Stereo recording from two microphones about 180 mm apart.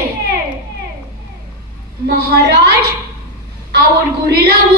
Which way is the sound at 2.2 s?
60° right (ahead or behind).